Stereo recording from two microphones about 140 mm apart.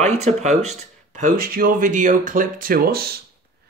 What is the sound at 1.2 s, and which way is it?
Speech, 85° right.